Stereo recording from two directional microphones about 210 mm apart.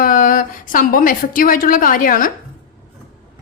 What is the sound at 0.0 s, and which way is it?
A woman's voice, 40° left (ahead or behind).